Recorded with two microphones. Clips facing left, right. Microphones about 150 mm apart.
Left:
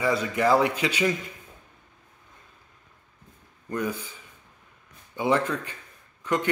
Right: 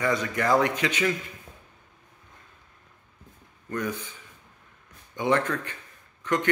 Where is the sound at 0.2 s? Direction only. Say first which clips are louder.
Left 2 dB; 10° left (ahead or behind).